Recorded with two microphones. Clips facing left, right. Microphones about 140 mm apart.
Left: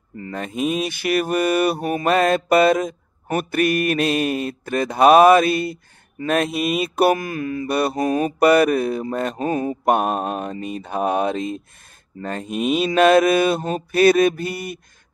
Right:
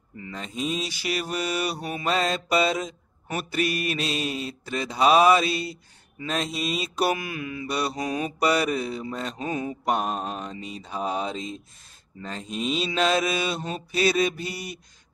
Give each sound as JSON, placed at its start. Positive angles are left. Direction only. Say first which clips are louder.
{"t": 0.2, "sound": "mantra", "louder": "left 7 dB", "side_deg": 55}